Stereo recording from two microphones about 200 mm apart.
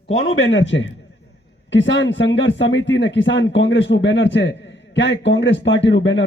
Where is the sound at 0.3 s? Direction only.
70° left (ahead or behind).